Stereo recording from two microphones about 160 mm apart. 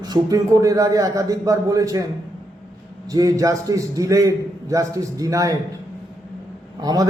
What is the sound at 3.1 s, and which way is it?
A man's voice, 20° right (ahead or behind).